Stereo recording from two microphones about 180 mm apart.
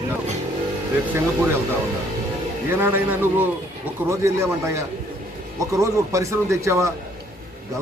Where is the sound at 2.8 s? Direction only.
10° right (ahead or behind).